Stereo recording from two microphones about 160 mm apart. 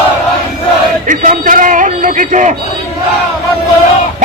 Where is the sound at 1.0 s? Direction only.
55° right (ahead or behind).